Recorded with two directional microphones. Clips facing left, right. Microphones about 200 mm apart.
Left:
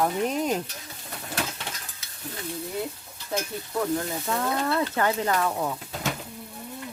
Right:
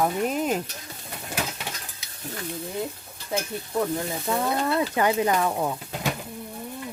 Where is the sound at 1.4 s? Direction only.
15° right (ahead or behind).